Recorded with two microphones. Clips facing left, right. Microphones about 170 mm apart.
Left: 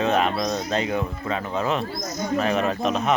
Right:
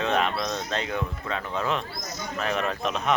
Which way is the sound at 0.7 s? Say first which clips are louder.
Left 5 dB; 10° left (ahead or behind).